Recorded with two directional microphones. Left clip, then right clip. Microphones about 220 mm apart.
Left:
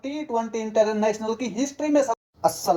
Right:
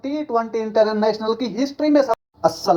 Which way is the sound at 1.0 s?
30° right (ahead or behind).